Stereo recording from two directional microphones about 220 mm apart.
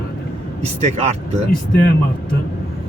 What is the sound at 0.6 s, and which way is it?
Speech, 30° right (ahead or behind).